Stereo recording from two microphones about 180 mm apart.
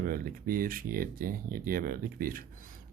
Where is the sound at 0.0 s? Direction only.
55° right (ahead or behind).